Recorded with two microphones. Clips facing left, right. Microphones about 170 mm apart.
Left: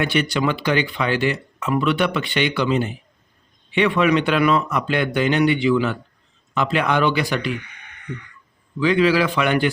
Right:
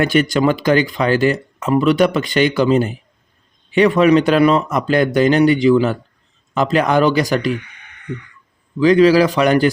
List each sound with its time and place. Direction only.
0.0 s a man's voice: 45° right (ahead or behind)
8.8 s a man's voice: 40° right (ahead or behind)